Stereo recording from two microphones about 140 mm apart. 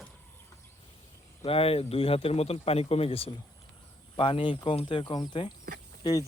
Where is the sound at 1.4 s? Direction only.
40° left (ahead or behind).